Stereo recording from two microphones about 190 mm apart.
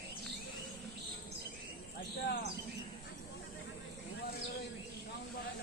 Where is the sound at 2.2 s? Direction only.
60° left (ahead or behind).